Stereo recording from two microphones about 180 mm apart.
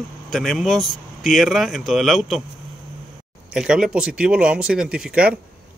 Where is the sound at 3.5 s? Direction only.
5° right (ahead or behind).